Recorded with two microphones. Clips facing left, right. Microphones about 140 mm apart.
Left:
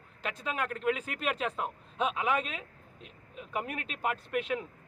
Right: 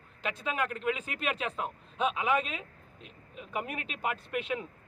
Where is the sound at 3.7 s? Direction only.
40° left (ahead or behind).